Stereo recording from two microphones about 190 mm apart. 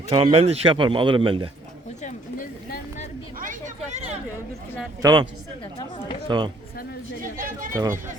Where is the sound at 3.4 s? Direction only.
45° right (ahead or behind).